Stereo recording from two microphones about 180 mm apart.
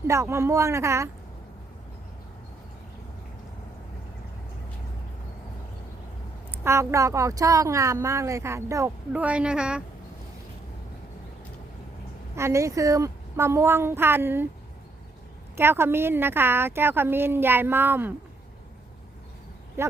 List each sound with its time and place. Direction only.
0.1 s a woman's voice: 15° right (ahead or behind)
6.5 s a woman's voice: 15° right (ahead or behind)
12.4 s a woman's voice: 15° right (ahead or behind)
15.5 s a woman's voice: 15° right (ahead or behind)
19.8 s speech: 15° right (ahead or behind)